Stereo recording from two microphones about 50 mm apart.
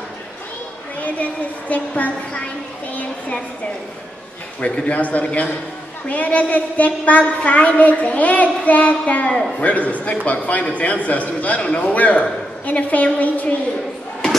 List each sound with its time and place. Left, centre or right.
0.9 s a woman's voice: left
4.6 s a man's voice: left